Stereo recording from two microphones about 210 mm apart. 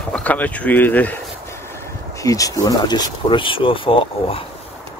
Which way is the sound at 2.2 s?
15° left (ahead or behind).